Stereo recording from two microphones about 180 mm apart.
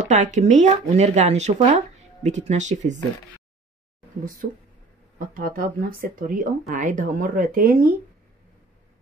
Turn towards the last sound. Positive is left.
turn(degrees=-50)  # may be behind; listen again after turning